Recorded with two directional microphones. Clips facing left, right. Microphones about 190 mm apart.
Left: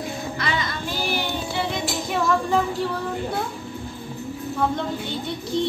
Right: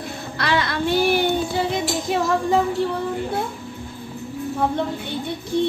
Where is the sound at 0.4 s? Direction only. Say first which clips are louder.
Right 9 dB; 70° right (ahead or behind).